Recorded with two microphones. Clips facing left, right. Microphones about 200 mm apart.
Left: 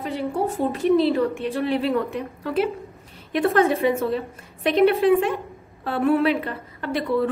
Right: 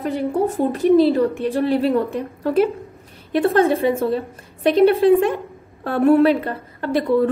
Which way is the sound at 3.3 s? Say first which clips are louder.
Right 3 dB; 30° right (ahead or behind).